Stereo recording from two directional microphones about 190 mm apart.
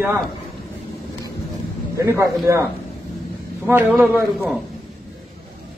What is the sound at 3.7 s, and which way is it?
Speech, 10° right (ahead or behind).